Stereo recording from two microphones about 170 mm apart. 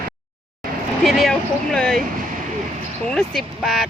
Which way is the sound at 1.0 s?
Centre (ahead or behind).